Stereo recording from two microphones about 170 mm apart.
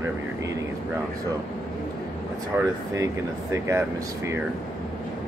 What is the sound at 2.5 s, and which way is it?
Speech, 15° right (ahead or behind).